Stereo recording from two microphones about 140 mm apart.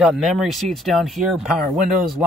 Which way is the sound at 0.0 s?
5° right (ahead or behind).